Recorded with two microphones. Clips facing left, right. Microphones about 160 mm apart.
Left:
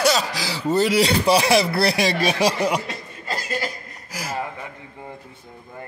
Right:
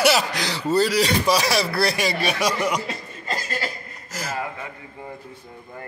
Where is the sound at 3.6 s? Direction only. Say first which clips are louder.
Left 1 dB; 10° left (ahead or behind).